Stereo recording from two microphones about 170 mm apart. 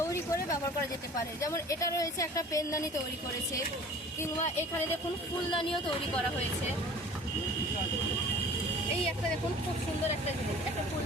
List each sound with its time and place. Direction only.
1.4 s speech: 20° left (ahead or behind)